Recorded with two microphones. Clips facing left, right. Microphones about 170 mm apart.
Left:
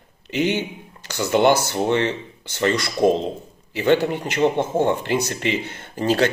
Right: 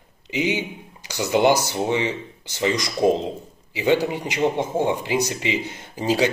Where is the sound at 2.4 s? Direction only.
60° left (ahead or behind).